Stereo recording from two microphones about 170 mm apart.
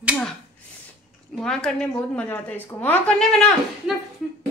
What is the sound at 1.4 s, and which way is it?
A woman's voice, 5° left (ahead or behind).